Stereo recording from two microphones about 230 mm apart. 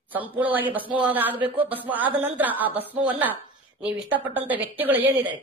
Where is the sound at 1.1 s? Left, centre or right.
Centre.